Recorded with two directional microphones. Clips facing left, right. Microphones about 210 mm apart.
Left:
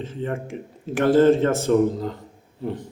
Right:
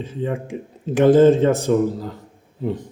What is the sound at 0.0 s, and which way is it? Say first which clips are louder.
Speech: right 3 dB; 10° right (ahead or behind).